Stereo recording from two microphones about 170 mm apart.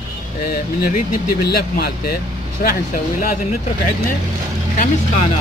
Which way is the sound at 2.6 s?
55° left (ahead or behind).